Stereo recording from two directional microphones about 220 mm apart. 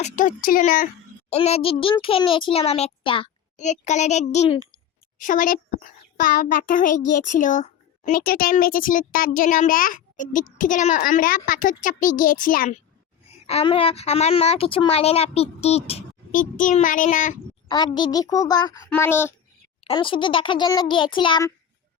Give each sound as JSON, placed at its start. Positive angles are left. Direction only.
{"t": 0.0, "sound": "speech", "side_deg": 35}
{"t": 1.3, "sound": "a child's voice", "side_deg": 30}
{"t": 13.5, "sound": "speech", "side_deg": 25}
{"t": 17.7, "sound": "a child's voice", "side_deg": 20}
{"t": 19.8, "sound": "speech", "side_deg": 20}